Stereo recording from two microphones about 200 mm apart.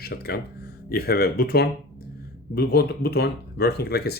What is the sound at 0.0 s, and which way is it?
Speech, 50° left (ahead or behind).